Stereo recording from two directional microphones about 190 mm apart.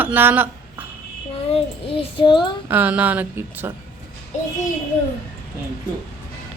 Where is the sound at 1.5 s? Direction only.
25° left (ahead or behind).